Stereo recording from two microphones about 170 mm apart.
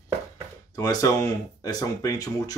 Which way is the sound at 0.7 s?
20° left (ahead or behind).